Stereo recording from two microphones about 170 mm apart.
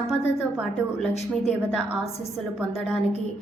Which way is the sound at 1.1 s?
40° left (ahead or behind).